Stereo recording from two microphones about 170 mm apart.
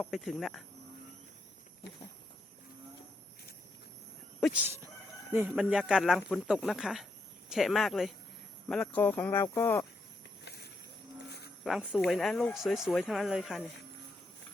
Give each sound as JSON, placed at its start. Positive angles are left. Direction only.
{"t": 0.0, "sound": "speech", "side_deg": 0}
{"t": 1.8, "sound": "a sound", "side_deg": 75}
{"t": 5.3, "sound": "speech", "side_deg": -10}
{"t": 10.4, "sound": "snake", "side_deg": 70}
{"t": 11.6, "sound": "speech", "side_deg": 0}